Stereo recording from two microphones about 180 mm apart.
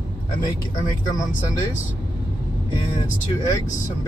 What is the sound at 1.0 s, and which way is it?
Speech, 20° left (ahead or behind).